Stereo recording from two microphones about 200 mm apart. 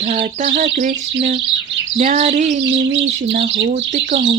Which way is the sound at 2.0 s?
35° right (ahead or behind).